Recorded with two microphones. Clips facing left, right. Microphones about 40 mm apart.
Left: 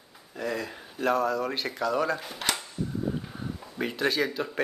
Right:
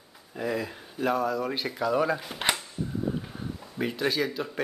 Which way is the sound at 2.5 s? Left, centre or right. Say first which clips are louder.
Even; centre.